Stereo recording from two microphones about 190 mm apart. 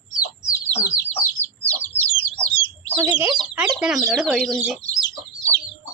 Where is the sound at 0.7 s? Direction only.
35° left (ahead or behind).